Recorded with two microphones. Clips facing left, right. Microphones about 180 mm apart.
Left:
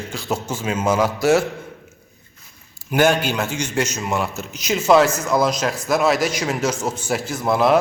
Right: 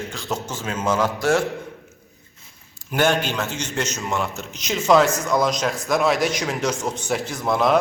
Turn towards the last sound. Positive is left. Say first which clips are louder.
# left 2 dB
turn(degrees=5)  # may be behind; listen again after turning